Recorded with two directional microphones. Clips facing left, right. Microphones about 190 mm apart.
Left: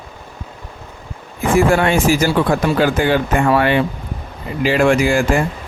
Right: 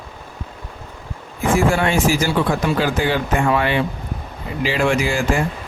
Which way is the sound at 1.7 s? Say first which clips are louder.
Left 3 dB; 60° left (ahead or behind).